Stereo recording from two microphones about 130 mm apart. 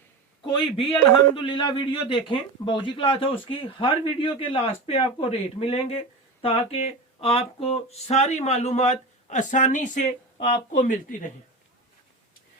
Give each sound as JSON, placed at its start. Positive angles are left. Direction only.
{"t": 0.5, "sound": "a man's voice", "side_deg": 40}
{"t": 10.4, "sound": "speech", "side_deg": 55}